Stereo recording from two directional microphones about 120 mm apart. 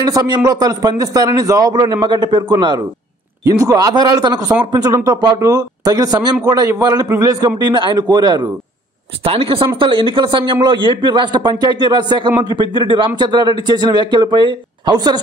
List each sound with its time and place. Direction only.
0.0 s a man's voice: 35° right (ahead or behind)
9.2 s a man's voice: 50° right (ahead or behind); by 15.1 s 35° right (ahead or behind)